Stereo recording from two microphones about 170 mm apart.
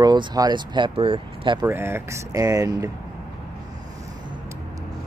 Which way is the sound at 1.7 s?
15° right (ahead or behind).